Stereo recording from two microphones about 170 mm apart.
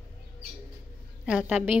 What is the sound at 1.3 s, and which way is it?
Speech, 5° right (ahead or behind).